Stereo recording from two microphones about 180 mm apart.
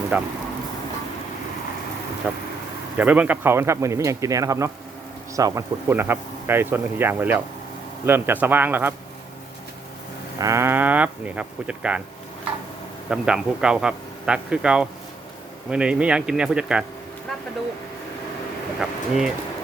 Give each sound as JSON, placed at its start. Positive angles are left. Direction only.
{"t": 0.1, "sound": "speech", "side_deg": -10}
{"t": 2.2, "sound": "speech", "side_deg": -10}
{"t": 10.3, "sound": "speech", "side_deg": -15}
{"t": 13.1, "sound": "a man's voice", "side_deg": -5}
{"t": 18.8, "sound": "a man's voice", "side_deg": -5}